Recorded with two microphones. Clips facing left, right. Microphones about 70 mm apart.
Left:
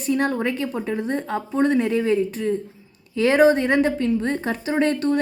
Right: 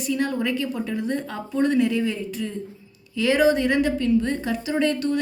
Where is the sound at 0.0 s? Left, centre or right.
Left.